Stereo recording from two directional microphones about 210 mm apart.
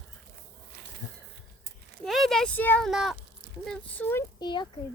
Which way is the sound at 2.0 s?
Centre (ahead or behind).